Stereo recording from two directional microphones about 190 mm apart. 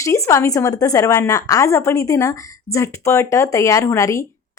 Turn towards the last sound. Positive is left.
turn(degrees=15)  # may be behind; listen again after turning